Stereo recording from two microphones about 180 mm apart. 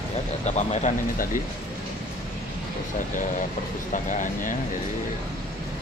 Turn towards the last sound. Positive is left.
turn(degrees=45)  # may be behind; listen again after turning